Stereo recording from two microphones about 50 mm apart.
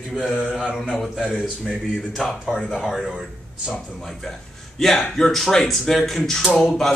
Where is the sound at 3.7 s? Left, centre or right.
Centre.